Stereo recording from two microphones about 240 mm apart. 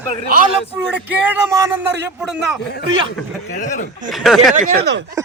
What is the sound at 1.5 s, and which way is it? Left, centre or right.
Speech, centre.